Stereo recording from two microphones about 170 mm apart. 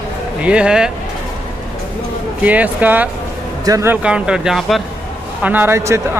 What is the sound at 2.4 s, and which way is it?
Speech, 10° right (ahead or behind).